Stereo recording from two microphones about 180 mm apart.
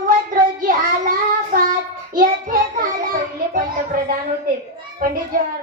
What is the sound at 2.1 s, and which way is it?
Child singing, 50° right (ahead or behind).